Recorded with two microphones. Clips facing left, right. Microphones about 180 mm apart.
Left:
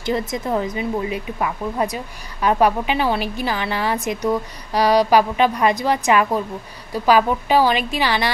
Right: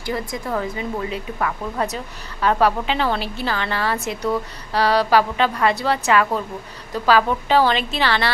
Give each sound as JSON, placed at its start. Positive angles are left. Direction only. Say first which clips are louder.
{"t": 0.3, "sound": "a woman's voice", "louder": "left 3 dB", "side_deg": 20}